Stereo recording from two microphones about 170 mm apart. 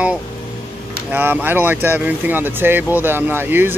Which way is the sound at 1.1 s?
10° right (ahead or behind).